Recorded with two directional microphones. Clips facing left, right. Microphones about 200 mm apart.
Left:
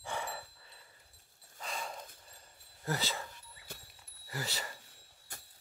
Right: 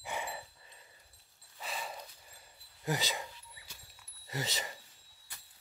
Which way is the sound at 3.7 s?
55° left (ahead or behind).